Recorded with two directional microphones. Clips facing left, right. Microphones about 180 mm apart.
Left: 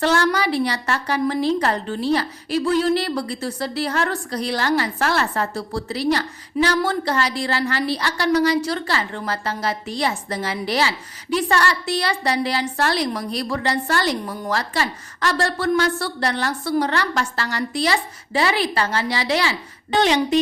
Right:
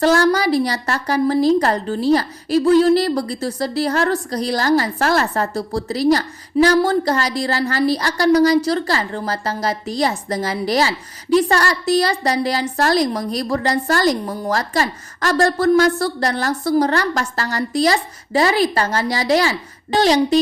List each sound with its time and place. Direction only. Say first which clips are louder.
0.0 s a woman's voice: right 4 dB; 40° right (ahead or behind)